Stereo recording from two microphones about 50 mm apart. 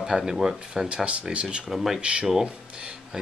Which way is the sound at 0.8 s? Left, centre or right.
Right.